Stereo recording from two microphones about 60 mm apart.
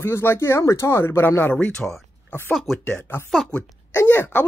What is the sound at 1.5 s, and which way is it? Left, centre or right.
Speech, centre.